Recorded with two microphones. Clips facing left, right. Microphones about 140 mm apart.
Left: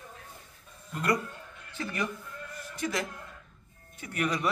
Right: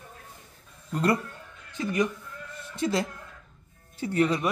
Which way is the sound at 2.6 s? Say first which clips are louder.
Right 6 dB; 25° right (ahead or behind).